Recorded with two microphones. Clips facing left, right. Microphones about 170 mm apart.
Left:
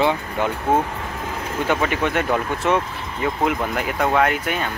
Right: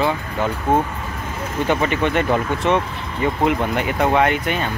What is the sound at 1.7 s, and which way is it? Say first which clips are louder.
Speech: right 2 dB; centre (ahead or behind).